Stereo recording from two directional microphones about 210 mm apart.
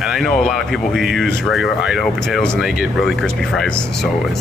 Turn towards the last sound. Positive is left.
turn(degrees=5)  # may be behind; listen again after turning